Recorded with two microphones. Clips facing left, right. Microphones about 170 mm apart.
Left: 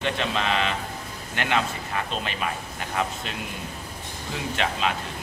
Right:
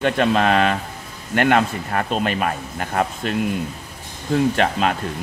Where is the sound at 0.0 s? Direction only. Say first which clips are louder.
Right 9 dB; 50° right (ahead or behind).